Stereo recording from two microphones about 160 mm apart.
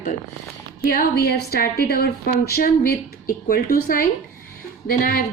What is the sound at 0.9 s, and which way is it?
A woman's voice, 75° left (ahead or behind).